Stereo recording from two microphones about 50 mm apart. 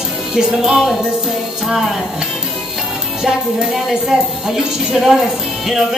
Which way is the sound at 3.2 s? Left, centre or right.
Centre.